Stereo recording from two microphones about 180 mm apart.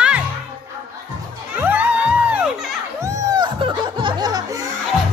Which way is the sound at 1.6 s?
10° right (ahead or behind).